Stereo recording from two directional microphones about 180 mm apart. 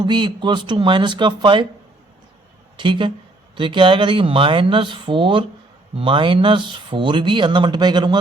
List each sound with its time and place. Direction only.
0.0 s speech: 25° right (ahead or behind)
2.7 s speech: 25° right (ahead or behind)